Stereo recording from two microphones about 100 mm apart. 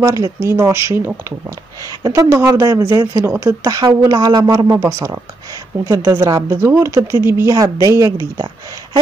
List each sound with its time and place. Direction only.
0.0 s a woman's voice: 35° right (ahead or behind)
2.2 s a woman's voice: 30° right (ahead or behind)
7.5 s speech: 35° right (ahead or behind)